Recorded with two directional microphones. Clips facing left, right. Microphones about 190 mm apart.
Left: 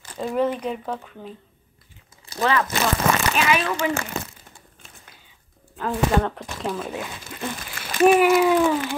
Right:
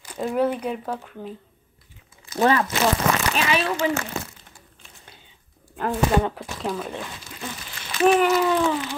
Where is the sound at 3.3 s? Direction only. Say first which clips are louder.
Left 1 dB; 35° right (ahead or behind).